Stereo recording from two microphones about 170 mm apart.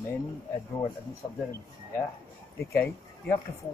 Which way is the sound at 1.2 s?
15° left (ahead or behind).